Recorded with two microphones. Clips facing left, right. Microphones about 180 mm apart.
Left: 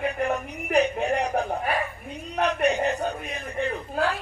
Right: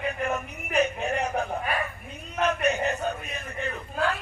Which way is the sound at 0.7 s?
35° left (ahead or behind).